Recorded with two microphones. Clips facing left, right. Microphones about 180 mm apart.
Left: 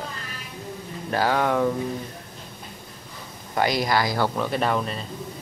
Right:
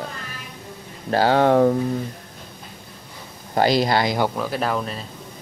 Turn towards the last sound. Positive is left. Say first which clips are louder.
# even
turn(degrees=0)  # may be behind; listen again after turning